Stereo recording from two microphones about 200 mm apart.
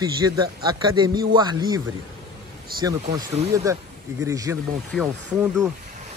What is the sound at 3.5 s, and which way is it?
A man's voice, 15° right (ahead or behind).